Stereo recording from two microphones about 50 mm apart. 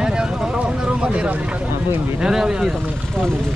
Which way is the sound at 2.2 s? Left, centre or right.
Centre.